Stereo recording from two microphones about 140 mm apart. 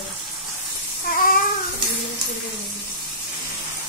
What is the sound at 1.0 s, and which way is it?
Babbling, 90° left.